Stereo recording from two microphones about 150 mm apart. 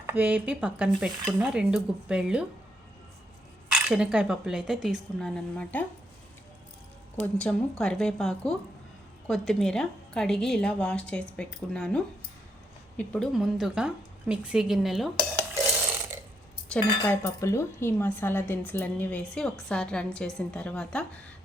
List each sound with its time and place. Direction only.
0.0 s stir: 10° right (ahead or behind)
3.7 s a woman's voice: 5° right (ahead or behind)
7.2 s a woman's voice: 5° left (ahead or behind)
16.6 s cutlery: 10° left (ahead or behind)